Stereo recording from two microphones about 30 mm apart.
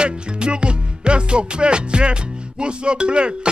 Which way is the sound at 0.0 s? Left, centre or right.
Right.